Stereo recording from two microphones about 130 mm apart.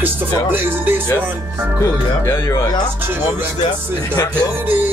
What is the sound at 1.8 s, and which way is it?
Speech, 20° left (ahead or behind).